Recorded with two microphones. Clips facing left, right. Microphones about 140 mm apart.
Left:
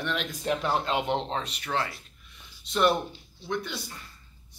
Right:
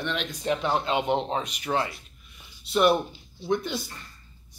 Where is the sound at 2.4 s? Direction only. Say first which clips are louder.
Right 3 dB; 10° right (ahead or behind).